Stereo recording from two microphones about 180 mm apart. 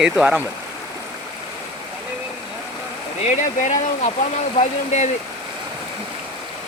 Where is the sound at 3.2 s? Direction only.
45° left (ahead or behind).